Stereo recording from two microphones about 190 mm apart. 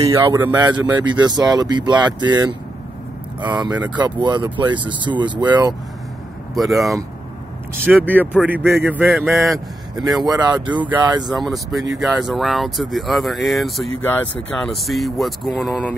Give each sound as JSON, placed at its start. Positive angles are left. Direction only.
{"t": 0.0, "sound": "a man's voice", "side_deg": -15}
{"t": 1.0, "sound": "speech", "side_deg": -25}
{"t": 3.7, "sound": "a man's voice", "side_deg": -10}
{"t": 4.2, "sound": "speech", "side_deg": -25}
{"t": 6.5, "sound": "speech", "side_deg": 0}
{"t": 8.0, "sound": "speech", "side_deg": 10}
{"t": 8.3, "sound": "a man's voice", "side_deg": -5}
{"t": 10.0, "sound": "speech", "side_deg": -20}
{"t": 11.3, "sound": "speech", "side_deg": 0}